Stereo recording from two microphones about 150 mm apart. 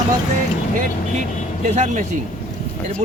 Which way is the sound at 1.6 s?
50° right (ahead or behind).